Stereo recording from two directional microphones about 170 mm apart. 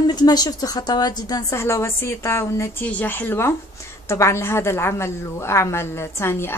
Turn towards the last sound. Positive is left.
turn(degrees=15)  # may be behind; listen again after turning